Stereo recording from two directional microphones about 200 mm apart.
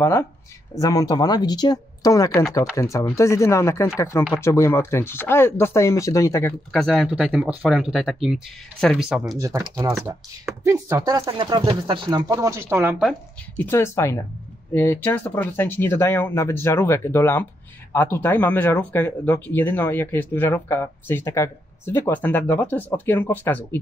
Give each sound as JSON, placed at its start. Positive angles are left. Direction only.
{"t": 0.7, "sound": "speech", "side_deg": 20}
{"t": 6.7, "sound": "speech", "side_deg": 0}
{"t": 9.4, "sound": "speech", "side_deg": -15}
{"t": 13.6, "sound": "speech", "side_deg": 10}